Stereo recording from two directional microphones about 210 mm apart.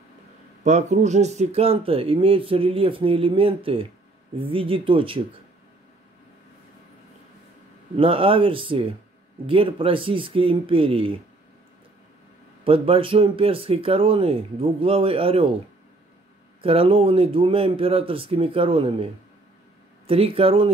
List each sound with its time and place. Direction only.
0.7 s speech: 35° right (ahead or behind)
7.9 s speech: 25° right (ahead or behind)
12.6 s speech: 25° right (ahead or behind)
16.6 s speech: 25° right (ahead or behind)
20.1 s speech: 25° right (ahead or behind)